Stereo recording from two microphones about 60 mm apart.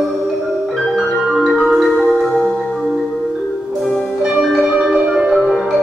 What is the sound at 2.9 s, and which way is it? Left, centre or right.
Music, centre.